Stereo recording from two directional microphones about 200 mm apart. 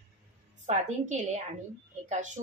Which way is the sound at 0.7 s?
35° right (ahead or behind).